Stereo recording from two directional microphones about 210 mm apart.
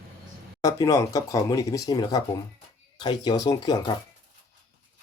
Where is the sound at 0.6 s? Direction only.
15° left (ahead or behind).